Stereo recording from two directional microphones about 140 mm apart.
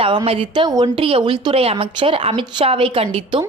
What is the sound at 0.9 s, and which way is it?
A woman's voice, 40° right (ahead or behind).